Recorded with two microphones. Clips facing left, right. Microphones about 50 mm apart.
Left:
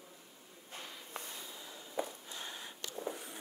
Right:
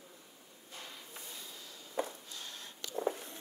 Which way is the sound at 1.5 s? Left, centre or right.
Left.